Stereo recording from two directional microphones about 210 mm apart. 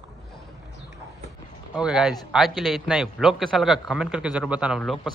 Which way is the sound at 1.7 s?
5° right (ahead or behind).